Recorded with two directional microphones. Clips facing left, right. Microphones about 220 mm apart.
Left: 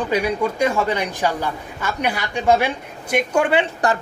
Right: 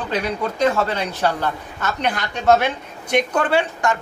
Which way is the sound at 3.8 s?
35° left (ahead or behind).